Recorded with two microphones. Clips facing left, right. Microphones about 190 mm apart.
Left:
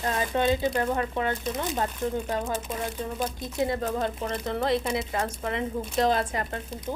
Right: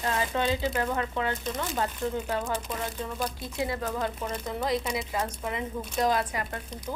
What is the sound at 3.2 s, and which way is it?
Speech, 25° left (ahead or behind).